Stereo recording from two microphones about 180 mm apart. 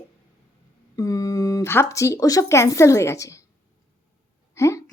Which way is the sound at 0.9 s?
20° left (ahead or behind).